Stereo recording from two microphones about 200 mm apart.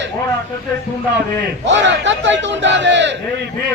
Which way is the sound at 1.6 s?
65° right (ahead or behind).